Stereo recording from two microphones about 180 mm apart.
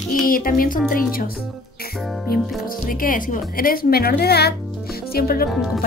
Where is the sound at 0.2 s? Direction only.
50° left (ahead or behind).